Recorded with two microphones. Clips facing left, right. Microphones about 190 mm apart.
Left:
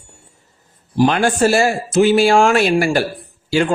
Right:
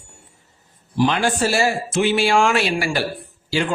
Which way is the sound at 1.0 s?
50° left (ahead or behind).